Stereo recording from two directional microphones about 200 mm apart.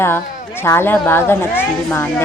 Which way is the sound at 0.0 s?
10° left (ahead or behind).